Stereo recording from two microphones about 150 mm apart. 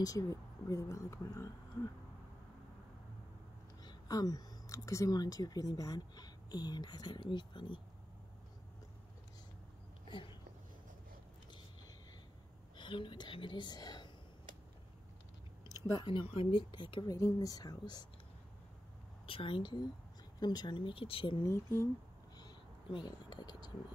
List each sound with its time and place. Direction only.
0.0 s speech: 20° left (ahead or behind)
3.8 s speech: 25° left (ahead or behind)
12.7 s a woman's voice: 35° left (ahead or behind)
15.9 s speech: 35° left (ahead or behind)
19.2 s speech: 35° left (ahead or behind)
21.4 s speech: 20° left (ahead or behind)
22.4 s a sound: 30° left (ahead or behind)